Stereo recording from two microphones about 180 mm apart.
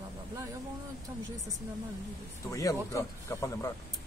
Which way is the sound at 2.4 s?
15° left (ahead or behind).